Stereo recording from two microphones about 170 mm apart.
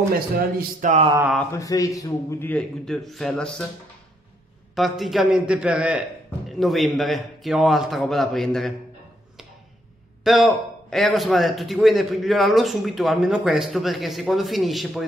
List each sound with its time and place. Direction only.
0.1 s a man's voice: 55° right (ahead or behind)
1.5 s a man's voice: 20° left (ahead or behind)
4.7 s a man's voice: centre (ahead or behind)
10.2 s a man's voice: centre (ahead or behind)